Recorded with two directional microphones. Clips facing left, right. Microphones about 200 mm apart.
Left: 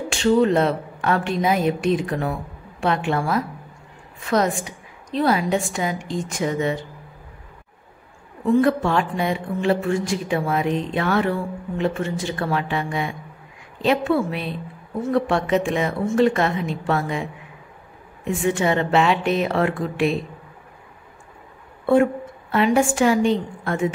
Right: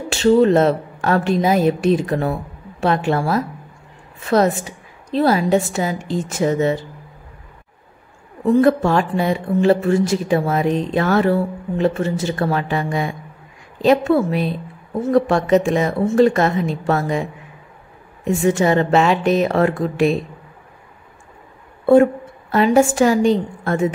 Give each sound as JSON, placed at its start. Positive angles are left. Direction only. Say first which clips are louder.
{"t": 0.1, "sound": "speech", "louder": "right 4 dB", "side_deg": -40}
{"t": 8.5, "sound": "a woman's voice", "louder": "right 4 dB", "side_deg": -40}
{"t": 22.5, "sound": "speech", "louder": "right 4 dB", "side_deg": -40}